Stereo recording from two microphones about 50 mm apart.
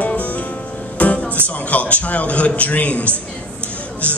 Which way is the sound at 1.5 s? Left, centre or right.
Left.